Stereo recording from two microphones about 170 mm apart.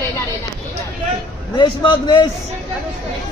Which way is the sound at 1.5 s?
30° left (ahead or behind).